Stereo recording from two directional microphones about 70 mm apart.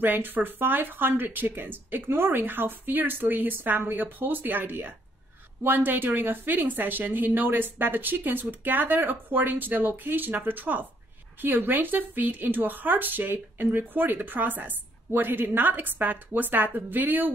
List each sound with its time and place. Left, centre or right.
0.0 s speech: right